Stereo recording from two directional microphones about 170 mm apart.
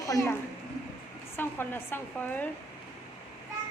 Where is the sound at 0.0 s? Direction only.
20° left (ahead or behind).